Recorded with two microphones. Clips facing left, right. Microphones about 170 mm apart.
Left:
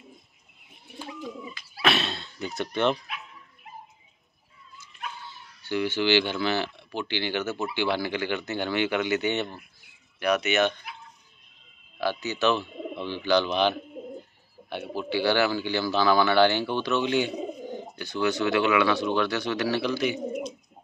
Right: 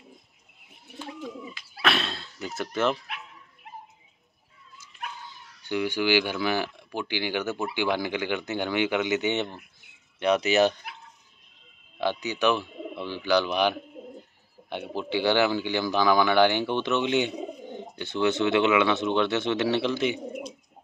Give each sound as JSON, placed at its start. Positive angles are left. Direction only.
{"t": 0.9, "sound": "bird", "side_deg": 0}
{"t": 1.8, "sound": "a sound", "side_deg": 0}
{"t": 5.3, "sound": "speech", "side_deg": -15}
{"t": 12.0, "sound": "speech", "side_deg": -15}